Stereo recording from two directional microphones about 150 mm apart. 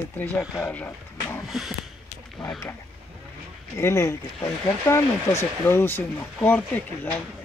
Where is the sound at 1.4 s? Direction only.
Centre (ahead or behind).